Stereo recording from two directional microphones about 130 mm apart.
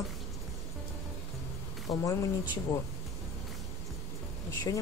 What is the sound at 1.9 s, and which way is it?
Speech, 50° left (ahead or behind).